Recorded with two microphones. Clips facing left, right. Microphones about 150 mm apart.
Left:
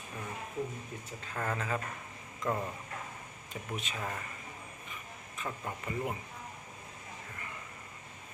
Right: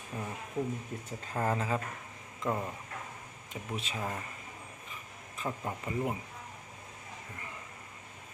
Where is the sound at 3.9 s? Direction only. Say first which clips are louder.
Right 3 dB; 20° right (ahead or behind).